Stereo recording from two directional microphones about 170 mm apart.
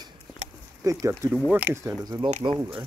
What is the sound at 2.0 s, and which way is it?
Speech, 25° right (ahead or behind).